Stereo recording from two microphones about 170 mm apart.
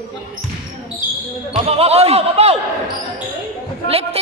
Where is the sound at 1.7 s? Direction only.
35° right (ahead or behind).